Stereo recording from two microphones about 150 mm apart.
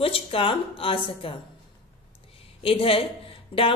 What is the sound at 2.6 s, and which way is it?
Speech, 40° left (ahead or behind).